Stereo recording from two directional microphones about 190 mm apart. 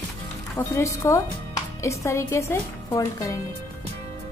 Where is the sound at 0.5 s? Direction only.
15° left (ahead or behind).